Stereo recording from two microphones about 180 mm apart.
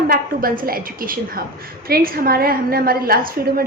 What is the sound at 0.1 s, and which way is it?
A woman's voice, 50° right (ahead or behind).